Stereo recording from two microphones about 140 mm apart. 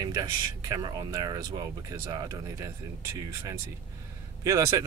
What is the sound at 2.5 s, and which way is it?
Speech, 20° right (ahead or behind).